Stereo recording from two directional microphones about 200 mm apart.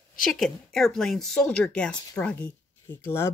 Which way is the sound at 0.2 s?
Centre (ahead or behind).